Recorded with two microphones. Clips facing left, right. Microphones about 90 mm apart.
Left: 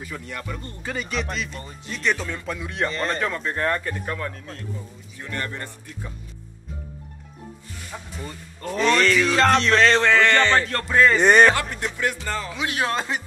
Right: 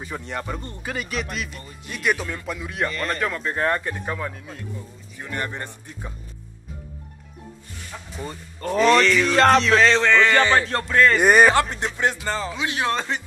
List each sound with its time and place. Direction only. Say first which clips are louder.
0.0 s speech: right 3 dB; 30° right (ahead or behind)
0.8 s speech: left 1 dB; 5° right (ahead or behind)
5.2 s speech: right 1 dB; 20° right (ahead or behind)
7.9 s a man's voice: left 2 dB; 10° left (ahead or behind)
8.3 s speech: right 5 dB; 40° right (ahead or behind)
9.0 s speech: even; centre (ahead or behind)
9.3 s music: right 4 dB; 40° right (ahead or behind)
9.6 s speech: right 1 dB; 5° right (ahead or behind)
10.9 s speech: even; 5° left (ahead or behind)
11.1 s speech: even; 5° right (ahead or behind)
11.5 s speech: right 5 dB; 25° right (ahead or behind)
12.9 s a man's voice: even; 10° left (ahead or behind)